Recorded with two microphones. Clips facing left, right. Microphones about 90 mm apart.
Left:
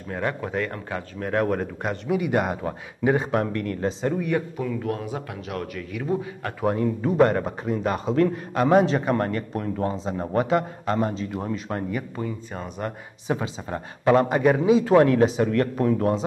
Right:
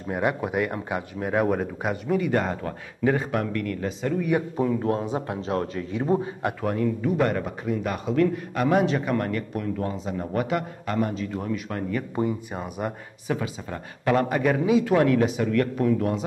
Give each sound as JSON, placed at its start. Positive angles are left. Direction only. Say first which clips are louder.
{"t": 0.1, "sound": "speech", "louder": "right 2 dB", "side_deg": -15}
{"t": 2.0, "sound": "speech", "louder": "left 1 dB", "side_deg": 15}
{"t": 4.6, "sound": "a man's voice", "louder": "right 4 dB", "side_deg": -30}
{"t": 6.6, "sound": "speech", "louder": "left 4 dB", "side_deg": 25}
{"t": 7.0, "sound": "a man's voice", "louder": "left 4 dB", "side_deg": 35}
{"t": 12.2, "sound": "a man's voice", "louder": "right 8 dB", "side_deg": -20}
{"t": 12.5, "sound": "speech", "louder": "right 1 dB", "side_deg": -10}
{"t": 13.3, "sound": "a man's voice", "louder": "left 2 dB", "side_deg": 25}